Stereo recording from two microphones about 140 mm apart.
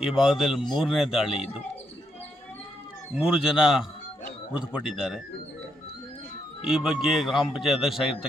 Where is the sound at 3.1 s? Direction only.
5° right (ahead or behind).